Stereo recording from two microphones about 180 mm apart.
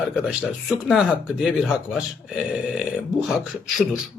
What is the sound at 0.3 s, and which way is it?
Speech, 5° right (ahead or behind).